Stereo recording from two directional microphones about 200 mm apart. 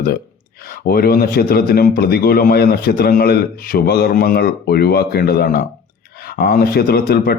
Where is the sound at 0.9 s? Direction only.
50° left (ahead or behind).